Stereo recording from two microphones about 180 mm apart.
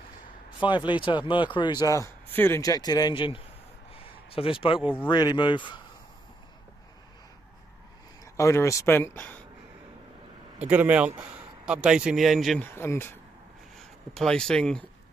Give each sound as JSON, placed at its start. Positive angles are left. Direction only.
{"t": 0.7, "sound": "speech", "side_deg": 25}
{"t": 8.4, "sound": "speech", "side_deg": 15}
{"t": 10.6, "sound": "a man's voice", "side_deg": -10}
{"t": 12.6, "sound": "speech", "side_deg": 15}